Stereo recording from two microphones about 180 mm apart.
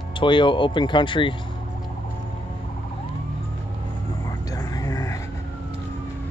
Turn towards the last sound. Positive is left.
turn(degrees=20)  # may be behind; listen again after turning